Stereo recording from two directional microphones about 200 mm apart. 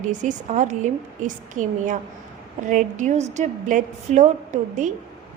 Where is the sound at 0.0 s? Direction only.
40° right (ahead or behind).